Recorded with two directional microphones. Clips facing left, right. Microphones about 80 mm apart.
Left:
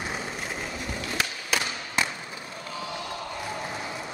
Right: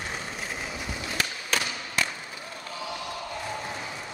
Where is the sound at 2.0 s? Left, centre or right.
Left.